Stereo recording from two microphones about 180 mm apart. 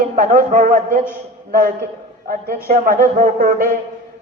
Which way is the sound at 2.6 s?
50° right (ahead or behind).